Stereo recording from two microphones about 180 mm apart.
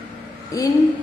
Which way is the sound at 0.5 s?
20° left (ahead or behind).